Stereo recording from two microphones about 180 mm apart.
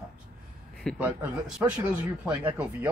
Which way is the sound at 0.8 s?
5° left (ahead or behind).